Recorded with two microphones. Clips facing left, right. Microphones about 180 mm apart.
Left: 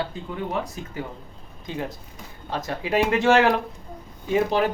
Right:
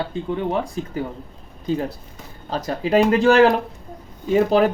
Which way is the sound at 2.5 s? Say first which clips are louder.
Right 6 dB; 40° right (ahead or behind).